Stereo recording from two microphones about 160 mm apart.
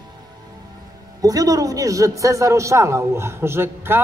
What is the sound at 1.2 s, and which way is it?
A man's voice, 20° right (ahead or behind).